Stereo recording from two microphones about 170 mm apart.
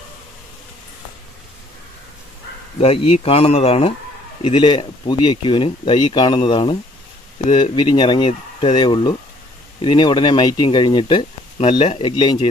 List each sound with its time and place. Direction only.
2.8 s speech: 35° left (ahead or behind)